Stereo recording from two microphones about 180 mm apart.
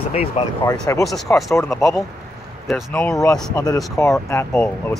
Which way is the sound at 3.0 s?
15° left (ahead or behind).